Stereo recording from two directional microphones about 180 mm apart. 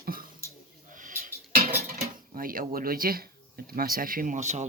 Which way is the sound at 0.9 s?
50° right (ahead or behind).